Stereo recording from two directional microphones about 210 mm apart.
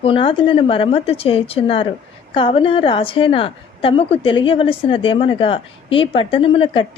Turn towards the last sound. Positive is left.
turn(degrees=25)  # may be behind; listen again after turning